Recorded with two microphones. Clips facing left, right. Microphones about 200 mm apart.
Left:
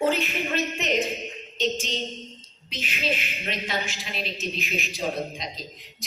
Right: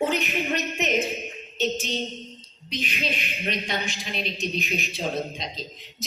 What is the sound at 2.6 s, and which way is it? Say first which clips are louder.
A woman's voice: even; 15° right (ahead or behind).